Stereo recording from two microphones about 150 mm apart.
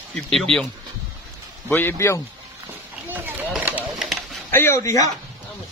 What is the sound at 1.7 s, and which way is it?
Speech, 15° left (ahead or behind).